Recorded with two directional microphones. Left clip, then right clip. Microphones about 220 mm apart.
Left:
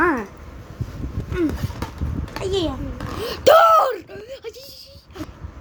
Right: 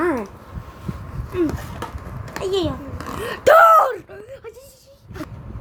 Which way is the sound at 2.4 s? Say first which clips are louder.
Right 1 dB; 20° left (ahead or behind).